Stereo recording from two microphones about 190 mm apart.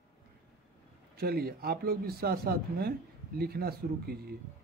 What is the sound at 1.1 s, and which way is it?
Speech, 55° right (ahead or behind).